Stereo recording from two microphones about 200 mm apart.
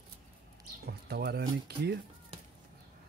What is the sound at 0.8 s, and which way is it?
Speech, 50° right (ahead or behind).